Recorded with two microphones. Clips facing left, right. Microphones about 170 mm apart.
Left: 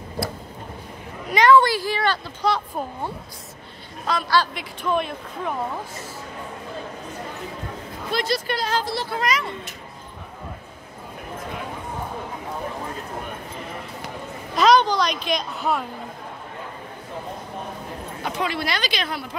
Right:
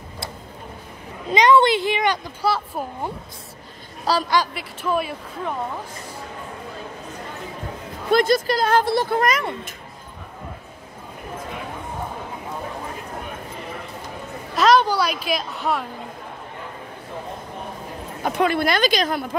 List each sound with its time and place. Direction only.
1.3 s speech: 20° right (ahead or behind)
2.4 s speech: 5° right (ahead or behind)
4.0 s a man's voice: 35° right (ahead or behind)
4.6 s speech: 5° right (ahead or behind)
8.1 s speech: 50° right (ahead or behind)
14.5 s a child's voice: centre (ahead or behind)
18.2 s speech: 50° right (ahead or behind)